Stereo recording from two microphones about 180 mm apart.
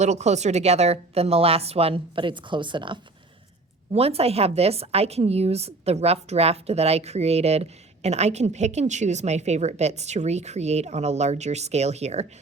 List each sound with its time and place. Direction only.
0.0 s a woman's voice: 40° right (ahead or behind)